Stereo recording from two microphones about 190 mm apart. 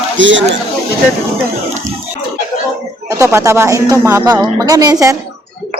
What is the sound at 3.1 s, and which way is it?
Speech, 15° right (ahead or behind).